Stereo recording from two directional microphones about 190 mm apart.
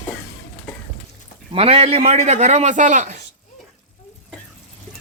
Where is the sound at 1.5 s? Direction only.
30° right (ahead or behind).